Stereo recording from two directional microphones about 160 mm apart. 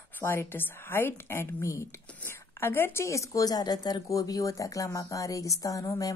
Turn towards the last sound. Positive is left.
turn(degrees=20)  # may be behind; listen again after turning